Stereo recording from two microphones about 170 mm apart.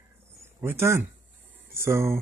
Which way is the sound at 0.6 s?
15° right (ahead or behind).